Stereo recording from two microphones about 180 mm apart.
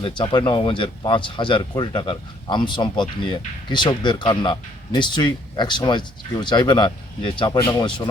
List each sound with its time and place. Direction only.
0.0 s speech: 30° left (ahead or behind)